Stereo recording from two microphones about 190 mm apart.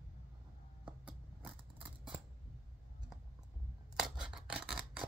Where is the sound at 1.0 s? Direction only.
5° right (ahead or behind).